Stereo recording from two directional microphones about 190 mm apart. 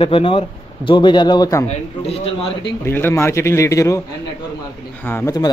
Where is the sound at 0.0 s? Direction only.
30° left (ahead or behind).